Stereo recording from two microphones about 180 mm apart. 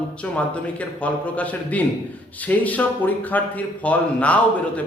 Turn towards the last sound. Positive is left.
turn(degrees=10)  # may be behind; listen again after turning